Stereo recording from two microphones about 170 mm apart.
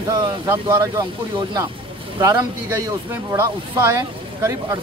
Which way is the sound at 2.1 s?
20° right (ahead or behind).